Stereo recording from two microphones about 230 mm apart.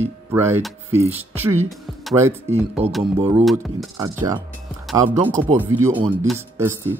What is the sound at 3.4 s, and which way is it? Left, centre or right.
Speech, centre.